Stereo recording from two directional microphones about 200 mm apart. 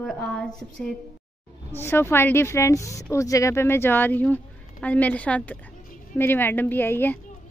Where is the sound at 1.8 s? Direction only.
10° left (ahead or behind).